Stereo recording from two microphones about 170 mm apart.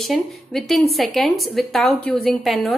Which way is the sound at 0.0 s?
Centre (ahead or behind).